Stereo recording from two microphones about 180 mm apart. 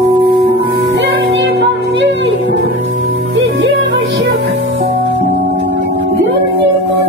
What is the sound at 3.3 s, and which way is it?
Music, 90° right.